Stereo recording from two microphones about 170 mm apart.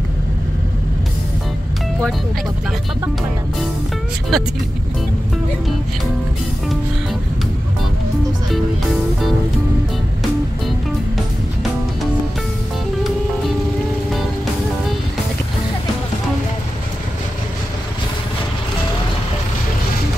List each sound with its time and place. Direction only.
4.3 s speech: 5° left (ahead or behind)